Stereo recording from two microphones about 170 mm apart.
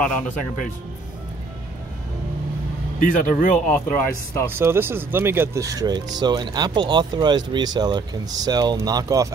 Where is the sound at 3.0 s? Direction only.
55° left (ahead or behind).